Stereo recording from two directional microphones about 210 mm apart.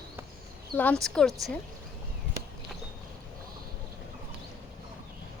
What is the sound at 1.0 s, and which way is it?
Speech, 5° left (ahead or behind).